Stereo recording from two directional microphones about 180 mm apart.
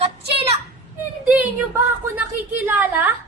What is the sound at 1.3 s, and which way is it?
A woman's voice, 10° right (ahead or behind).